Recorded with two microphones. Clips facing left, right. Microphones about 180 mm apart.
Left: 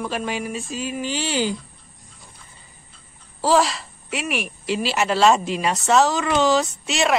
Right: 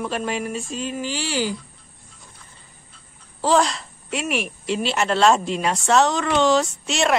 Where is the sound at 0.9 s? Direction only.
20° left (ahead or behind).